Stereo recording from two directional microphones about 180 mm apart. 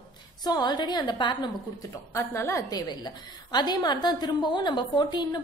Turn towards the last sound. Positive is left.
turn(degrees=25)  # may be behind; listen again after turning